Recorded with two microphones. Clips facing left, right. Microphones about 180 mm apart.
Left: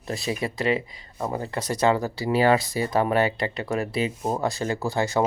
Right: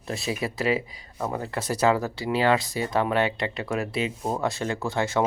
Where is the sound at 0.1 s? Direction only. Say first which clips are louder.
Left 1 dB; centre (ahead or behind).